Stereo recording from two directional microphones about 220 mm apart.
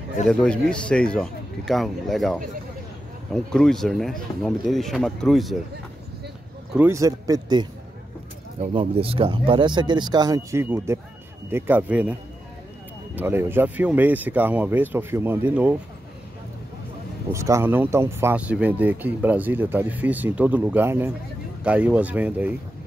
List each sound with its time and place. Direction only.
0.3 s speech: 5° left (ahead or behind)
6.7 s speech: 10° right (ahead or behind)
17.3 s speech: 10° right (ahead or behind)